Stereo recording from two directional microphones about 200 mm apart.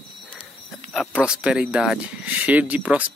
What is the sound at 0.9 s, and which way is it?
Speech, centre (ahead or behind).